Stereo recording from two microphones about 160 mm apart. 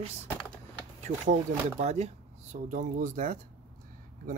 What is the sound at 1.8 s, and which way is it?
Speech, 45° right (ahead or behind).